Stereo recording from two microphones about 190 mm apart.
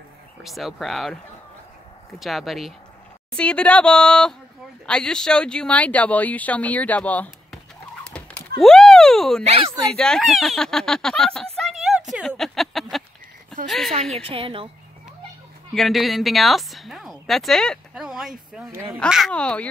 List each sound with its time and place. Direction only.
0.4 s speech: centre (ahead or behind)
8.5 s a sound: centre (ahead or behind)
9.9 s speech: 5° left (ahead or behind)
14.1 s a woman's voice: 30° right (ahead or behind)
15.7 s speech: centre (ahead or behind)